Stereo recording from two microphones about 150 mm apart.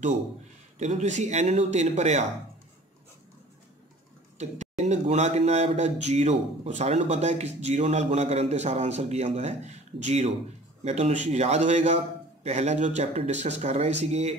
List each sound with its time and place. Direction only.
0.7 s speech: 50° right (ahead or behind)
4.4 s speech: 50° right (ahead or behind)